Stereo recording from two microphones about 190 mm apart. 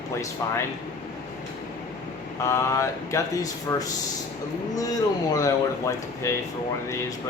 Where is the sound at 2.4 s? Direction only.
15° left (ahead or behind).